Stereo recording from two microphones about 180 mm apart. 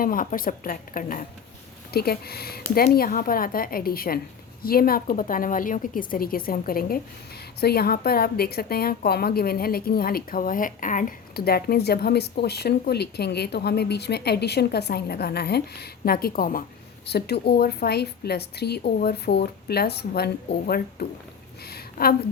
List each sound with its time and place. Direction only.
0.0 s a woman's voice: 50° left (ahead or behind)
17.1 s a woman's voice: 65° left (ahead or behind)
21.7 s a sound: 60° left (ahead or behind)